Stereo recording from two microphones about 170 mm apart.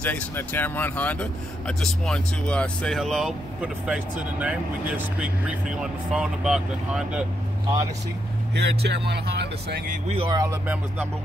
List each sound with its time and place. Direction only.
0.0 s speech: 10° left (ahead or behind)
8.5 s speech: 80° right
10.0 s speech: 35° right (ahead or behind)
10.3 s speech: 15° right (ahead or behind)